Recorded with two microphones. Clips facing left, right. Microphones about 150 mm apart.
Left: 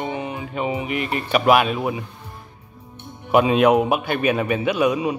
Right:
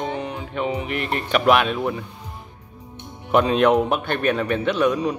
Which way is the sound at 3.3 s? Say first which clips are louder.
Left 1 dB; 5° left (ahead or behind).